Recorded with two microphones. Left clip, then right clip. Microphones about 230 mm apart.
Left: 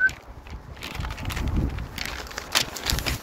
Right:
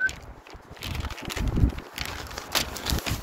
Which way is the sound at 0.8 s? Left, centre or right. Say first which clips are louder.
Left 1 dB; right.